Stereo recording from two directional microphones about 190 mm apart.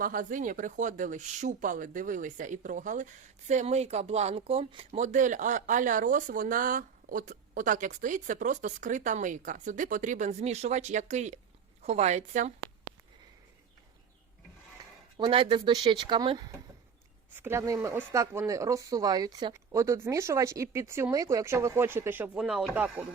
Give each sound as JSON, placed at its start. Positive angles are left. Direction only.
{"t": 0.0, "sound": "speech", "side_deg": -45}
{"t": 15.2, "sound": "speech", "side_deg": -25}
{"t": 17.3, "sound": "speech", "side_deg": -10}